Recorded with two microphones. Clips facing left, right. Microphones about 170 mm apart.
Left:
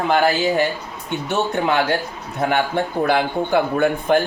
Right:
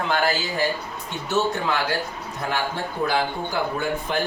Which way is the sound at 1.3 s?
65° left (ahead or behind).